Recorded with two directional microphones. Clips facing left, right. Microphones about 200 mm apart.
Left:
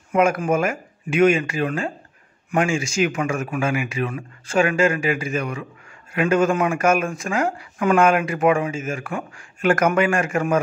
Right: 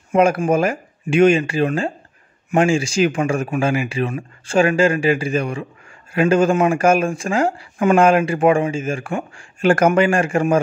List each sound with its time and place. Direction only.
0.1 s speech: 30° right (ahead or behind)